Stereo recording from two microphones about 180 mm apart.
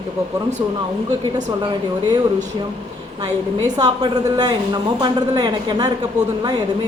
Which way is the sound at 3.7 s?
20° right (ahead or behind).